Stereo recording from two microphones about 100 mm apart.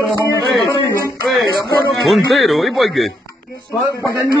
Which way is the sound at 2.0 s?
Centre (ahead or behind).